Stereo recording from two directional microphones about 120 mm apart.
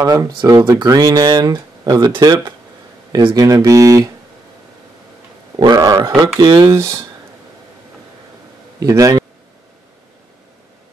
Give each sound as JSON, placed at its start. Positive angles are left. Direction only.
{"t": 0.0, "sound": "speech", "side_deg": -30}
{"t": 5.6, "sound": "speech", "side_deg": -30}
{"t": 6.7, "sound": "speech", "side_deg": -25}
{"t": 8.7, "sound": "a man's voice", "side_deg": -30}